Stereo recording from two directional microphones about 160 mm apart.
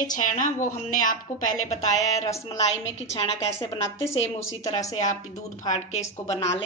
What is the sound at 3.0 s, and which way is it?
Speech, 45° left (ahead or behind).